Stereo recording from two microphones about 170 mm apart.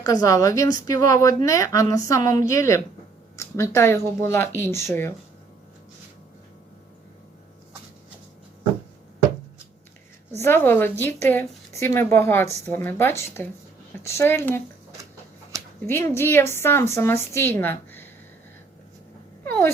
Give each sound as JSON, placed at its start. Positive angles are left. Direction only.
{"t": 0.0, "sound": "a woman's voice", "side_deg": 20}
{"t": 10.3, "sound": "a woman's voice", "side_deg": 15}
{"t": 15.9, "sound": "a woman's voice", "side_deg": 15}
{"t": 19.5, "sound": "wail", "side_deg": 15}